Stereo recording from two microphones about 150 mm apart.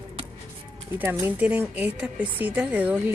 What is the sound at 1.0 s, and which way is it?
A woman's voice, 15° right (ahead or behind).